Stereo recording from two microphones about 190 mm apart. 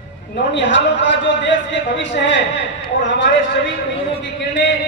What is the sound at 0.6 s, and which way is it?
Speech, 70° left (ahead or behind).